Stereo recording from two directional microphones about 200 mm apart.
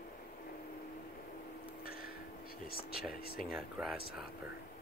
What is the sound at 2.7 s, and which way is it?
Speech, 50° left (ahead or behind).